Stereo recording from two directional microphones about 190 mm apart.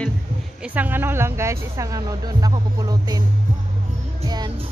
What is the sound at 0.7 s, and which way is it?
Speech, 10° right (ahead or behind).